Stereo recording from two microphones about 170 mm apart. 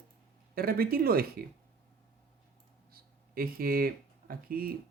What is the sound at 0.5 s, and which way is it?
Speech, 60° right (ahead or behind).